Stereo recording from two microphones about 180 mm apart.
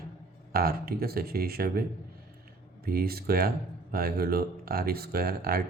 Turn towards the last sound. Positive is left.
turn(degrees=-55)  # may be behind; listen again after turning